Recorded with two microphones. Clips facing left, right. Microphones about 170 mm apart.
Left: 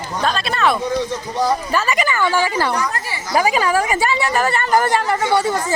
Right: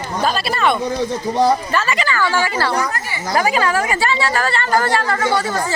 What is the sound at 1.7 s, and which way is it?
A woman's voice, 10° left (ahead or behind).